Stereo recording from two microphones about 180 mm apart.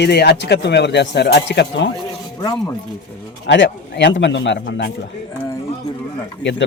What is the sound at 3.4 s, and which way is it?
A man's voice, 70° left (ahead or behind).